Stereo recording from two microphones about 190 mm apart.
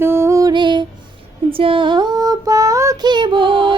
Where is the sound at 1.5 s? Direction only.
30° right (ahead or behind).